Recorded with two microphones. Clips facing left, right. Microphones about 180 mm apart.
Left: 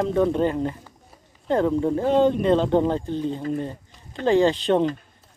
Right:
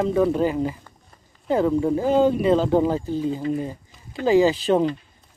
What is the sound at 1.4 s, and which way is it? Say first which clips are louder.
Speech: right 1 dB; 5° right (ahead or behind).